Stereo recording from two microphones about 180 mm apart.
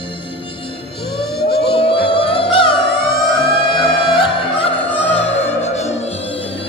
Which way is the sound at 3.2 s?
Centre (ahead or behind).